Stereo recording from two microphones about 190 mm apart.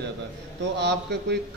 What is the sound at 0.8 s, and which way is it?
Speech, 65° right (ahead or behind).